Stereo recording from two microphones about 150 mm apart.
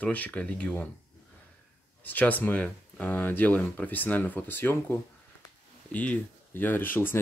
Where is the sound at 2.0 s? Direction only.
10° left (ahead or behind).